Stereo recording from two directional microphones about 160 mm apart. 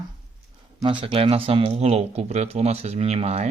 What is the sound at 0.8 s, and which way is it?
Speech, 35° right (ahead or behind).